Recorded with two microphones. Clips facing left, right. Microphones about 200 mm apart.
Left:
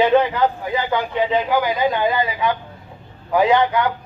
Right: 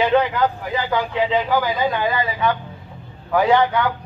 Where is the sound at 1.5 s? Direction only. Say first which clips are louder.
Left 1 dB; 15° left (ahead or behind).